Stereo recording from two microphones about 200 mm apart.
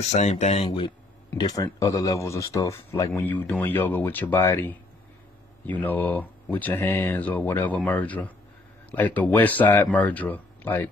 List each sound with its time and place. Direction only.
0.1 s speech: 35° left (ahead or behind); by 10.9 s 10° left (ahead or behind)